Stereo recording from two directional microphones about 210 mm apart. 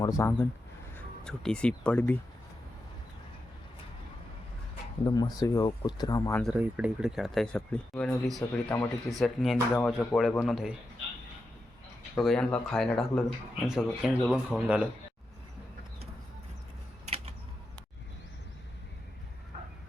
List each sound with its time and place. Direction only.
0.0 s speech: 15° left (ahead or behind)
1.2 s speech: centre (ahead or behind)
5.0 s speech: 20° left (ahead or behind)
6.4 s speech: 5° right (ahead or behind)
12.1 s speech: 5° left (ahead or behind)